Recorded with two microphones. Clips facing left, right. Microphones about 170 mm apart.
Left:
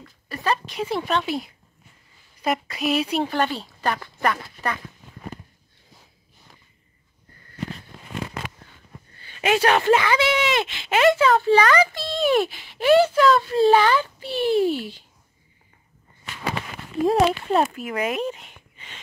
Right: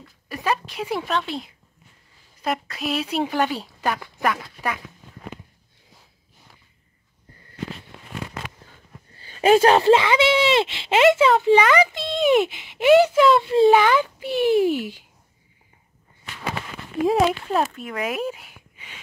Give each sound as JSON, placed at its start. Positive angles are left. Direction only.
{"t": 0.3, "sound": "speech", "side_deg": -10}
{"t": 9.1, "sound": "speech", "side_deg": -35}
{"t": 17.0, "sound": "speech", "side_deg": 0}